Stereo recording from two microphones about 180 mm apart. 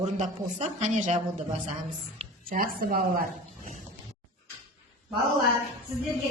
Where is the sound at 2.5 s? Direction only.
50° right (ahead or behind).